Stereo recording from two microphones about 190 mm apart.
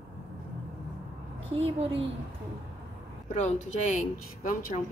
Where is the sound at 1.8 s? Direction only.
30° right (ahead or behind).